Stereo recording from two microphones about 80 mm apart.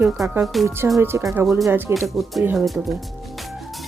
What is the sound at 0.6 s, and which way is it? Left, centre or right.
Speech, right.